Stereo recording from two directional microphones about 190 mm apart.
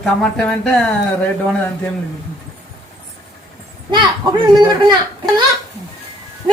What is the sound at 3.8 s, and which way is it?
Speech, 25° right (ahead or behind).